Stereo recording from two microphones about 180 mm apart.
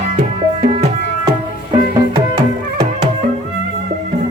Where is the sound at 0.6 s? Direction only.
35° right (ahead or behind).